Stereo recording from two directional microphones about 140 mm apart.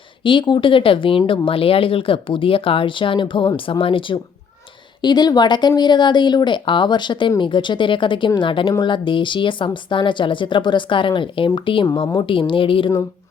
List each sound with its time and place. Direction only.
0.2 s speech: 35° left (ahead or behind)